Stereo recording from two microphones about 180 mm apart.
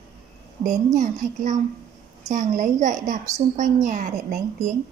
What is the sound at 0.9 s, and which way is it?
A woman's voice, 45° right (ahead or behind).